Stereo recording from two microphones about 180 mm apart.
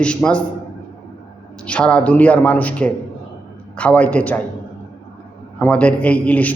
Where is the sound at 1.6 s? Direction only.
5° left (ahead or behind).